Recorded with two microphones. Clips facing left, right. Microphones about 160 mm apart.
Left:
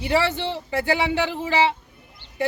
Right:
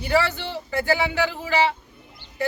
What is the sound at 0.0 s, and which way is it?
A man's voice, 25° left (ahead or behind).